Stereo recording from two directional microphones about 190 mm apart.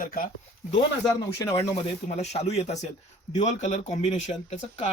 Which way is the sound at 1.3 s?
20° left (ahead or behind).